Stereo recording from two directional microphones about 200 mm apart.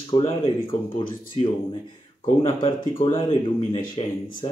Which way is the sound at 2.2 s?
35° left (ahead or behind).